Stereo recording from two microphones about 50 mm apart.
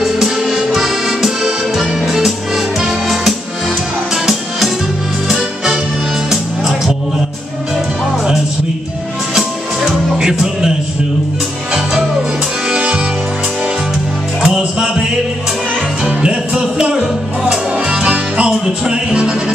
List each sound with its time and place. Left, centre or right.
0.0 s accordion: centre
4.1 s music: centre
9.3 s music: centre
11.7 s music: centre
14.4 s music: centre
16.1 s music: right